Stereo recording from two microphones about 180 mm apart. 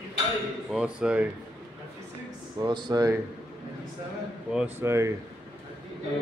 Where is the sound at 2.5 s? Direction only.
25° right (ahead or behind).